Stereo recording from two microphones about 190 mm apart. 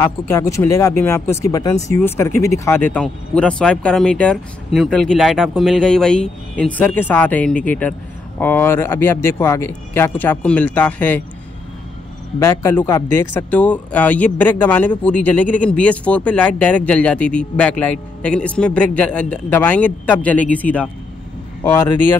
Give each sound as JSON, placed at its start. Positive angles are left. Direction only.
{"t": 0.0, "sound": "speech", "side_deg": 15}
{"t": 12.4, "sound": "speech", "side_deg": 15}